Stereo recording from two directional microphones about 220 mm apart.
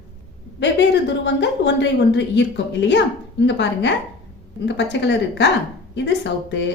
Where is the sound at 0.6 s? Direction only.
50° left (ahead or behind).